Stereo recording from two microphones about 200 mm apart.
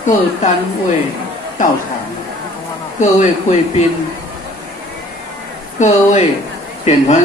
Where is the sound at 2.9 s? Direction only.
35° left (ahead or behind).